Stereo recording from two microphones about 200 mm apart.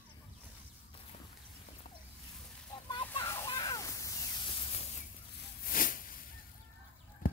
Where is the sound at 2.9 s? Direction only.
25° left (ahead or behind).